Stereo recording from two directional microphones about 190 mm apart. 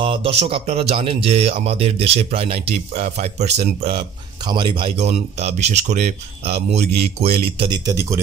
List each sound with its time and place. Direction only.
0.0 s speech: 30° right (ahead or behind)
4.5 s speech: 25° right (ahead or behind)